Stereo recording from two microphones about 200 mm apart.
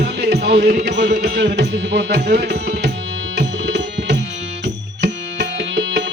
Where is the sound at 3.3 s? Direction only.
60° right (ahead or behind).